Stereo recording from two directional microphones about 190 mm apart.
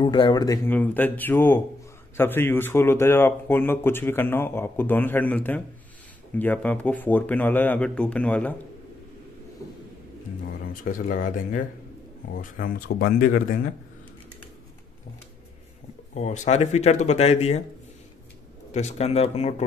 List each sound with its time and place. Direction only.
0.0 s speech: 25° left (ahead or behind); by 8.5 s 5° left (ahead or behind)
10.7 s speech: 45° left (ahead or behind)
16.2 s speech: 35° left (ahead or behind)
18.7 s speech: 35° left (ahead or behind)